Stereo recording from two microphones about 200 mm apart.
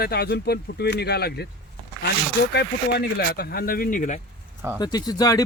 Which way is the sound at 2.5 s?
55° left (ahead or behind).